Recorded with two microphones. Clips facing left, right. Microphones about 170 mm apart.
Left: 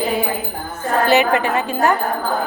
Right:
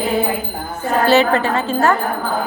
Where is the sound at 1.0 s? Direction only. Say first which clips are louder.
Right 2 dB; 15° left (ahead or behind).